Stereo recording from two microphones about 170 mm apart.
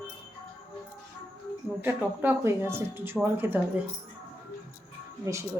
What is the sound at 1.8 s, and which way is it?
Speech, 10° right (ahead or behind).